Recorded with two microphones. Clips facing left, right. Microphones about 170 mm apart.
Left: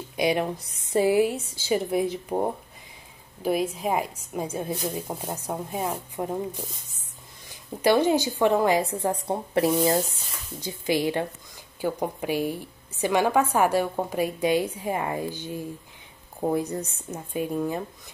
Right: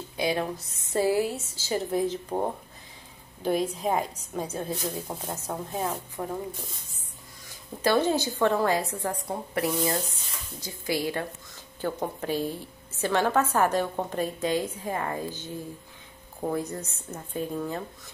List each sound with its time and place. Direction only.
0.1 s a woman's voice: 15° left (ahead or behind)
7.8 s a woman's voice: 15° left (ahead or behind)
9.3 s a woman's voice: 25° left (ahead or behind)